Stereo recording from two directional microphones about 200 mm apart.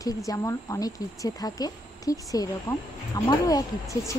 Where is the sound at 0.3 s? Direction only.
15° left (ahead or behind).